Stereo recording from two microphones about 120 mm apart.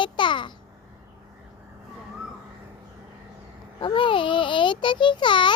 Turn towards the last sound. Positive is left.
turn(degrees=40)  # may be behind; listen again after turning